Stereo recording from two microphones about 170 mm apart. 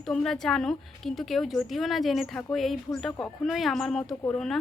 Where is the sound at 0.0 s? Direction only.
5° left (ahead or behind).